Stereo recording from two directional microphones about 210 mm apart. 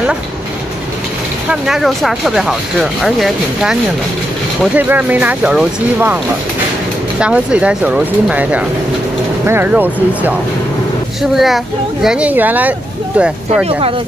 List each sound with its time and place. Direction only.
1.5 s speech: centre (ahead or behind)
4.7 s speech: 10° right (ahead or behind)
7.2 s speech: 5° right (ahead or behind)
11.3 s speech: centre (ahead or behind)
13.7 s speech: 25° right (ahead or behind)